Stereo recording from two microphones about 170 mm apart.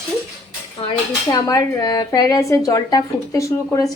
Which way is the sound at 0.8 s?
35° left (ahead or behind).